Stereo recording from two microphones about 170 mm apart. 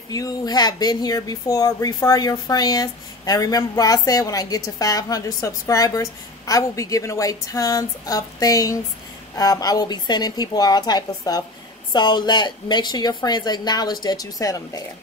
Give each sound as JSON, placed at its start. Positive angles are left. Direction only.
{"t": 0.1, "sound": "speech", "side_deg": 20}